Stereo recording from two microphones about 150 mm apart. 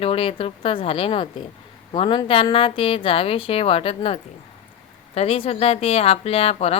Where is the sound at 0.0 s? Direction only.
40° left (ahead or behind).